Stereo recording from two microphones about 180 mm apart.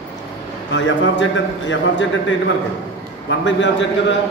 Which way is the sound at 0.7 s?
90° left.